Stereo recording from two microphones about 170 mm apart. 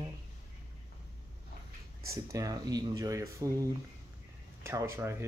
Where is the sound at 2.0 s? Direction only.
20° right (ahead or behind).